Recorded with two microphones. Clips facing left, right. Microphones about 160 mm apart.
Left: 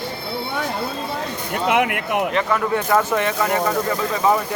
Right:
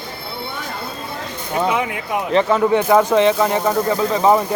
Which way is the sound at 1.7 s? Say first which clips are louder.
Left 1 dB; 75° left (ahead or behind).